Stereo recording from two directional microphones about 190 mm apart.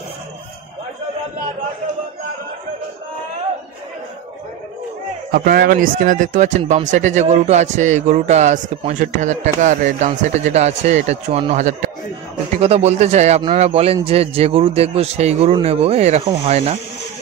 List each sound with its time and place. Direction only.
5.3 s a man's voice: 50° right (ahead or behind); by 16.7 s 30° right (ahead or behind)